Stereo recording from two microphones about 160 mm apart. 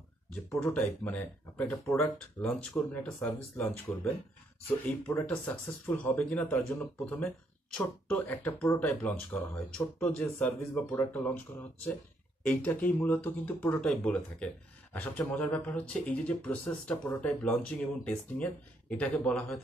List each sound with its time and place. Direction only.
0.3 s speech: 10° left (ahead or behind)